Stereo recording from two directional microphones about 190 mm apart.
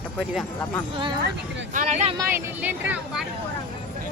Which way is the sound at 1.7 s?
40° right (ahead or behind).